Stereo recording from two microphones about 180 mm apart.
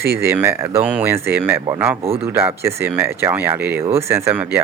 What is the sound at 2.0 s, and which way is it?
Speech, 35° right (ahead or behind).